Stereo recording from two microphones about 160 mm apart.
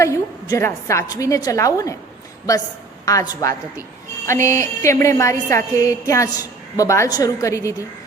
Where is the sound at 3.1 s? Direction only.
20° left (ahead or behind).